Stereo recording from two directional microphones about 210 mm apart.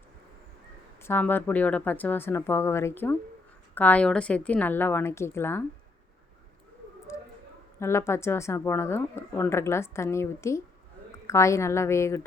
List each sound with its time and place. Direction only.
1.0 s a woman's voice: 10° left (ahead or behind)
7.1 s a sound: 15° left (ahead or behind)
7.8 s a woman's voice: 10° left (ahead or behind)